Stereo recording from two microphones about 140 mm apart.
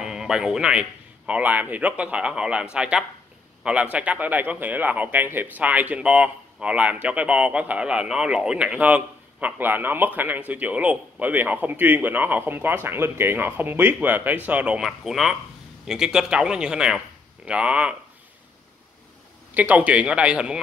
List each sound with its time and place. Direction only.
0.0 s a man's voice: 5° right (ahead or behind)
19.5 s a man's voice: 10° right (ahead or behind)